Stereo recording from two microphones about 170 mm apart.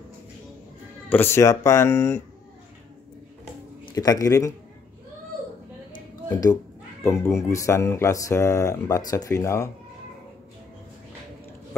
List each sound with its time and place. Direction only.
1.0 s speech: 10° left (ahead or behind)
3.8 s speech: 20° left (ahead or behind)
6.3 s speech: 20° left (ahead or behind)